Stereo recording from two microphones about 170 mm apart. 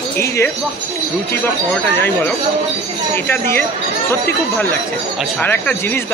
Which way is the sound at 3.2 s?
15° left (ahead or behind).